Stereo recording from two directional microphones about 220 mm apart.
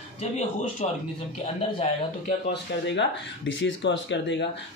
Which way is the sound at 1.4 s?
30° left (ahead or behind).